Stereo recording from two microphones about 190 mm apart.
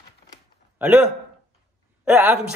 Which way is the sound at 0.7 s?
10° right (ahead or behind).